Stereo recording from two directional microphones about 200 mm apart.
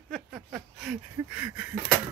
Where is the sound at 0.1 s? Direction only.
5° right (ahead or behind).